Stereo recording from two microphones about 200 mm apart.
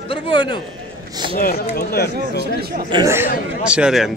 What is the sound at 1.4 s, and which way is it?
Speech, 45° left (ahead or behind).